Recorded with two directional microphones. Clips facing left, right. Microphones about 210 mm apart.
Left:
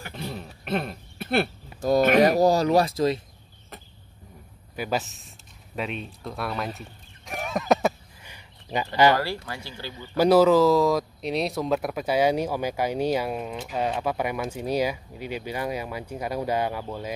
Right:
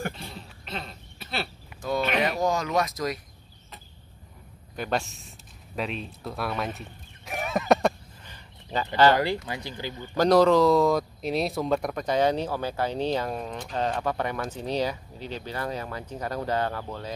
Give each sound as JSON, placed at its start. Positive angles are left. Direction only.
{"t": 0.3, "sound": "a sound", "side_deg": 55}
{"t": 1.9, "sound": "speech", "side_deg": 40}
{"t": 4.7, "sound": "speech", "side_deg": 5}
{"t": 5.8, "sound": "a sound", "side_deg": 0}
{"t": 9.1, "sound": "speech", "side_deg": -20}
{"t": 9.9, "sound": "speech", "side_deg": 10}